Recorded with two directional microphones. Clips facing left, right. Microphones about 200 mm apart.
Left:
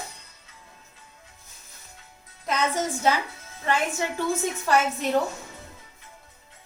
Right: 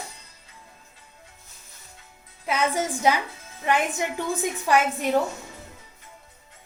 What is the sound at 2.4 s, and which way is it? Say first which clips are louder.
A woman's voice: right 1 dB; 10° right (ahead or behind).